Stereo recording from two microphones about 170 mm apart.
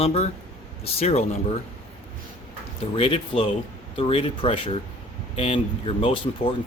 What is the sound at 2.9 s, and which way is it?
Speech, 35° left (ahead or behind).